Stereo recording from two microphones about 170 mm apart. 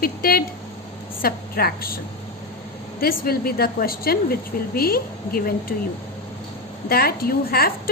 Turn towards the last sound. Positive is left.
turn(degrees=60)  # may be behind; listen again after turning